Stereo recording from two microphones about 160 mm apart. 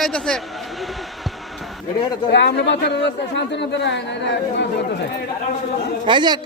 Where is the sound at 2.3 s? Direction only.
90° left.